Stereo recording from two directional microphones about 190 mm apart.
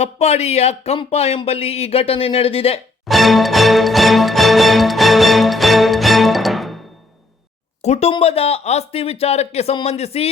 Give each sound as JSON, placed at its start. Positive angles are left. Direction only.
{"t": 0.0, "sound": "speech", "side_deg": 35}
{"t": 3.1, "sound": "music", "side_deg": 0}
{"t": 7.8, "sound": "speech", "side_deg": 35}